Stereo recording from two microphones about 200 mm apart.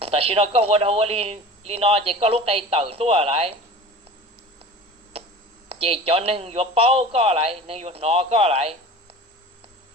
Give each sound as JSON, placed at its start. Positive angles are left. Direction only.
{"t": 0.0, "sound": "speech", "side_deg": -30}
{"t": 5.6, "sound": "speech", "side_deg": -30}